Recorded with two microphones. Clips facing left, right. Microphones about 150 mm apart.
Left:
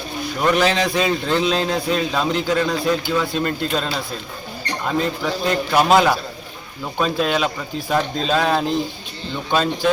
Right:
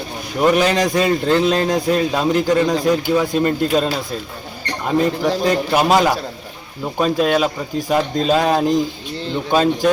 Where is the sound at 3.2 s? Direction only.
45° right (ahead or behind).